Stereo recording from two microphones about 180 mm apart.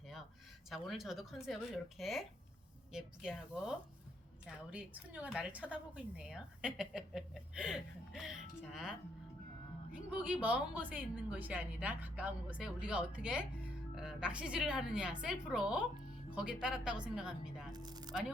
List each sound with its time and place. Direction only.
0.7 s a woman's voice: centre (ahead or behind)
17.7 s speech: 20° right (ahead or behind)